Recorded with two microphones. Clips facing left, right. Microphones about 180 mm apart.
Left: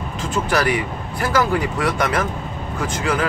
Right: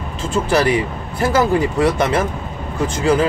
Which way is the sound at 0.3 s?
30° right (ahead or behind).